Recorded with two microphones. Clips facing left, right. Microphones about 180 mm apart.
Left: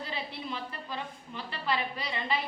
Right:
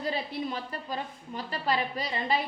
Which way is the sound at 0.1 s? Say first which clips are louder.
Right 5 dB; 45° right (ahead or behind).